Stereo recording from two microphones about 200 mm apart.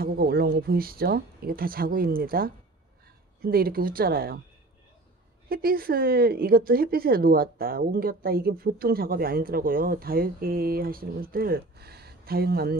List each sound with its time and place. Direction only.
0.0 s speech: 50° right (ahead or behind)
5.5 s speech: 50° right (ahead or behind)